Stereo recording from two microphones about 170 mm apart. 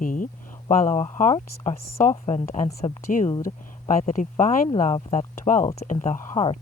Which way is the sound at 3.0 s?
50° left (ahead or behind).